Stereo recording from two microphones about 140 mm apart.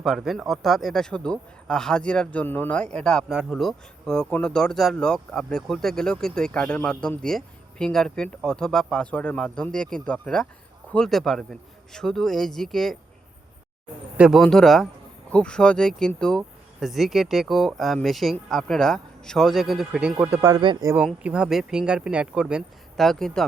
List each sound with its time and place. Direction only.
0.0 s speech: centre (ahead or behind)
14.2 s speech: 5° right (ahead or behind)
20.4 s speech: 30° right (ahead or behind)
21.2 s speech: 5° right (ahead or behind)